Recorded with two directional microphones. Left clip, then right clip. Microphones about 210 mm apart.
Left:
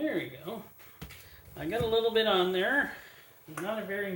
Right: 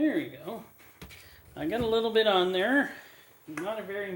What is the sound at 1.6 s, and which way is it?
Speech, 40° right (ahead or behind).